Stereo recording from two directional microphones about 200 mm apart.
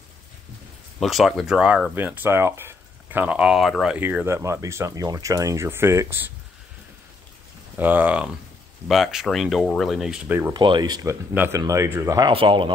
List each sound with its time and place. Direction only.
0.9 s speech: centre (ahead or behind)
7.7 s speech: 10° right (ahead or behind)
10.5 s speech: 25° right (ahead or behind)